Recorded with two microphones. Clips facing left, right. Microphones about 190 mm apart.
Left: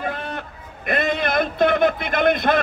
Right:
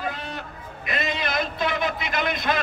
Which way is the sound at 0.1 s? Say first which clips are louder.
Left 5 dB; 55° left (ahead or behind).